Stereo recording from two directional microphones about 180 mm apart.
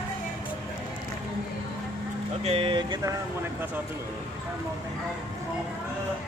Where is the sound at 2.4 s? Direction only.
30° right (ahead or behind).